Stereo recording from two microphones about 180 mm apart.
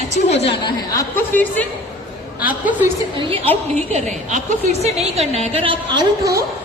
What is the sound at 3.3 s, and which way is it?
A woman's voice, 35° right (ahead or behind).